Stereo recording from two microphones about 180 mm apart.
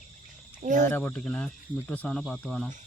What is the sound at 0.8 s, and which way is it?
Speech, 10° left (ahead or behind).